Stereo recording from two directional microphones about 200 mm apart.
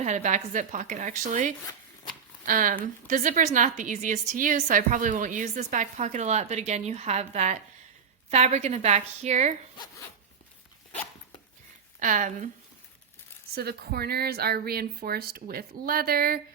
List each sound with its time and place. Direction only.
0.0 s a woman's voice: 35° right (ahead or behind)
11.9 s a woman's voice: 40° right (ahead or behind)
13.6 s speech: 50° right (ahead or behind)